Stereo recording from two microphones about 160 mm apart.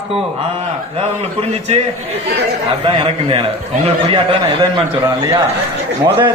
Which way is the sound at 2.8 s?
35° right (ahead or behind).